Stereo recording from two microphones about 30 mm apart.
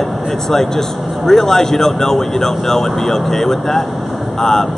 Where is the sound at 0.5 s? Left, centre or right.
Centre.